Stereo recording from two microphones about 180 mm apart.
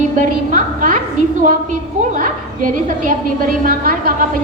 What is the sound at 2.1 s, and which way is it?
A woman's voice, 50° right (ahead or behind).